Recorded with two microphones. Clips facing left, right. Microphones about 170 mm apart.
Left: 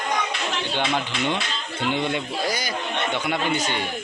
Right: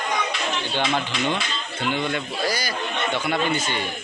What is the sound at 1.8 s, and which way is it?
A man's voice, 25° left (ahead or behind).